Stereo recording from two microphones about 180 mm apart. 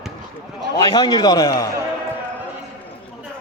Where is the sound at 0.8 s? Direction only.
25° left (ahead or behind).